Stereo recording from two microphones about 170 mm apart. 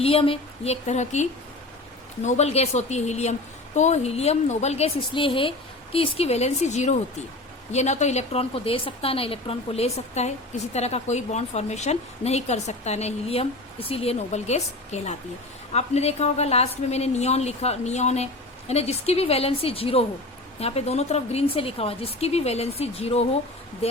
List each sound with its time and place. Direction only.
0.0 s a woman's voice: 35° left (ahead or behind)